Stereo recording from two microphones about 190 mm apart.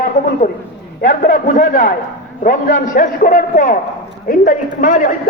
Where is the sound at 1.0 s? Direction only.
45° left (ahead or behind).